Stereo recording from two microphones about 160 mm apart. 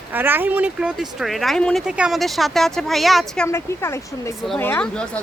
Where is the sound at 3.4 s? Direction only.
15° left (ahead or behind).